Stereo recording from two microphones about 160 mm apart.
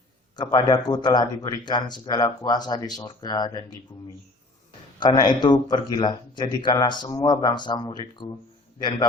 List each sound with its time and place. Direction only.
0.3 s speech: 25° left (ahead or behind)